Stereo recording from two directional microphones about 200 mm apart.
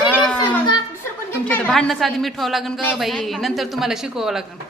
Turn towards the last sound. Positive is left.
turn(degrees=0)  # may be behind; listen again after turning